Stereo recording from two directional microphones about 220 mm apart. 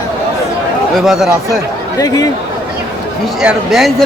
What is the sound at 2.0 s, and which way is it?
Speech, 15° left (ahead or behind).